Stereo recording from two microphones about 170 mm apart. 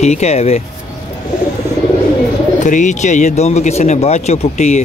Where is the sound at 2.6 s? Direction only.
45° left (ahead or behind).